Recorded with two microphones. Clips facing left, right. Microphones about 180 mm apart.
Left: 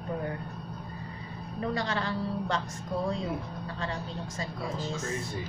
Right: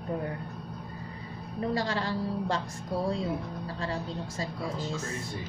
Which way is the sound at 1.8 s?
35° right (ahead or behind).